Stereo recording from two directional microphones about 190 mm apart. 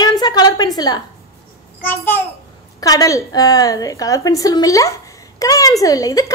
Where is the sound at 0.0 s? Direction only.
20° left (ahead or behind).